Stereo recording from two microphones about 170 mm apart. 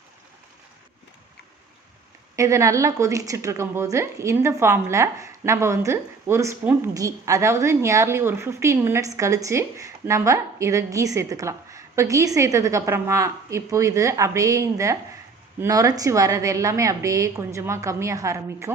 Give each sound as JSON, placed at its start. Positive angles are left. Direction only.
{"t": 2.3, "sound": "a woman's voice", "side_deg": -15}